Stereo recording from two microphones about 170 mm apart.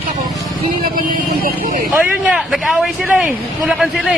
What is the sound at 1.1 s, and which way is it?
Speech, 60° right (ahead or behind).